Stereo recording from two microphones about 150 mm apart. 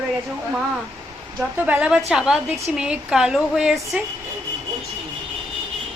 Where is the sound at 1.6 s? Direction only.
10° right (ahead or behind).